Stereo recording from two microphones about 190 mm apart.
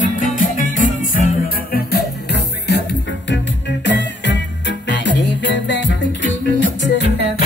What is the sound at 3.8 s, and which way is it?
Music, 70° left (ahead or behind).